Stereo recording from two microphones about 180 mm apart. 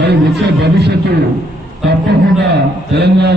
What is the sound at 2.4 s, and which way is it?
Speech, 70° right (ahead or behind).